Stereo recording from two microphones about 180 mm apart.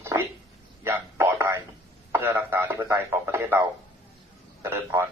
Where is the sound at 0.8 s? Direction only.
10° right (ahead or behind).